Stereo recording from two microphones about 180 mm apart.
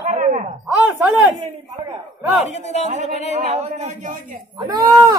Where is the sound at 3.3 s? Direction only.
40° right (ahead or behind).